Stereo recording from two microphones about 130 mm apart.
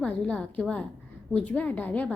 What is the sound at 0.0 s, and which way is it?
A woman's voice, 10° left (ahead or behind).